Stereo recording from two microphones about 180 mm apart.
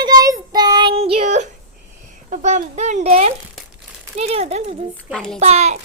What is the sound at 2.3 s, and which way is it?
A child's voice, 40° right (ahead or behind).